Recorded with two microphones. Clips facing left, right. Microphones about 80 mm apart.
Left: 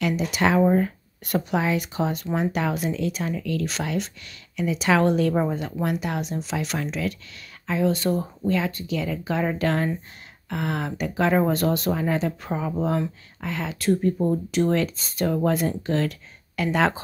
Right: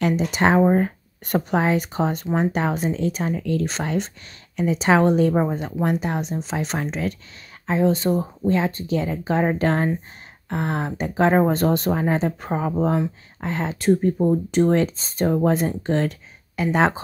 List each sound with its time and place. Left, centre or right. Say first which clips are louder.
0.0 s speech: right 3 dB; right
14.1 s speech: right 4 dB; centre
14.5 s speech: right 4 dB; right